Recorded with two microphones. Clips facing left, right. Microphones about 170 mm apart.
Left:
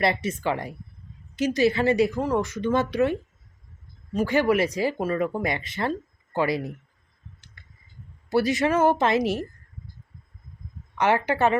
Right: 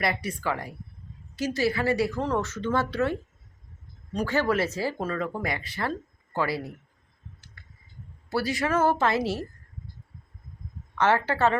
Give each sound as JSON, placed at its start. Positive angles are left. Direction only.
{"t": 0.0, "sound": "speech", "side_deg": 25}
{"t": 4.3, "sound": "speech", "side_deg": 15}
{"t": 7.6, "sound": "a sound", "side_deg": 20}
{"t": 8.3, "sound": "speech", "side_deg": 20}
{"t": 10.9, "sound": "speech", "side_deg": 15}